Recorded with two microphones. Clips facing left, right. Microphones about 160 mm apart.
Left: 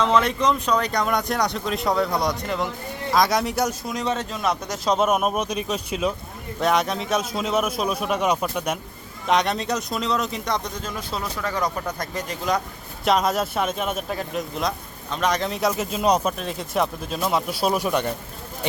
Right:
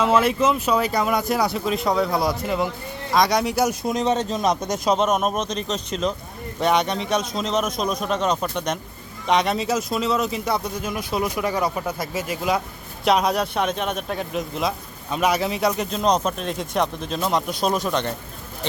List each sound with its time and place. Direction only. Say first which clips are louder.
0.0 s speech: right 2 dB; 5° right (ahead or behind)
3.8 s speech: right 5 dB; 20° right (ahead or behind)
4.9 s speech: even; 5° left (ahead or behind)